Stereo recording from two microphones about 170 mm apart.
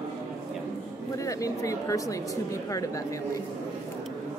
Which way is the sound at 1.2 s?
20° left (ahead or behind).